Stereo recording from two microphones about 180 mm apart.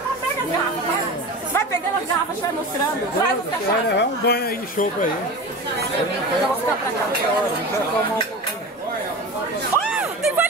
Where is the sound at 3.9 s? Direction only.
65° left (ahead or behind).